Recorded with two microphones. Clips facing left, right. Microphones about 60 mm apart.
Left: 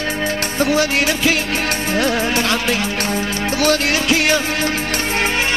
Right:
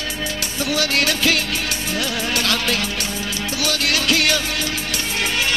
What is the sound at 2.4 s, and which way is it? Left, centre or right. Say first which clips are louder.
Music: left 3 dB; left.